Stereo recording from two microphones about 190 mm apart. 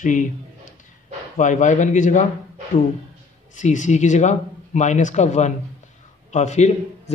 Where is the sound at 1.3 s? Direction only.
40° left (ahead or behind).